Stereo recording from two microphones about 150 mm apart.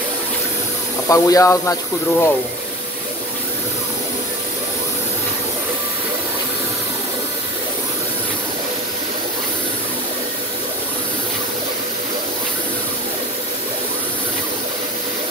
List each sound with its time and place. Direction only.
1.0 s speech: 20° left (ahead or behind)